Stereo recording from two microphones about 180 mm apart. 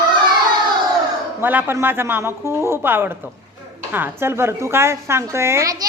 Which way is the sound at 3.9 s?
10° right (ahead or behind).